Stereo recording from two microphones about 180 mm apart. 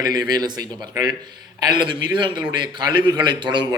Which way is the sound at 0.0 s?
20° right (ahead or behind).